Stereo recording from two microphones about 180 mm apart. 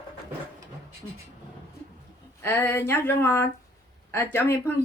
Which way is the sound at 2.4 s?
15° left (ahead or behind).